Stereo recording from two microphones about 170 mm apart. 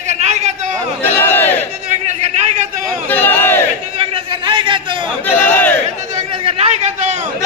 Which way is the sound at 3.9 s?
35° right (ahead or behind).